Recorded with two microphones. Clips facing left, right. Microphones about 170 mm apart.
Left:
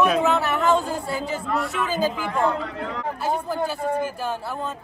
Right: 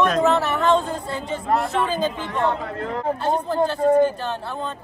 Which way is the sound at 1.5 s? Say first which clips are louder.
Right 6 dB; 35° right (ahead or behind).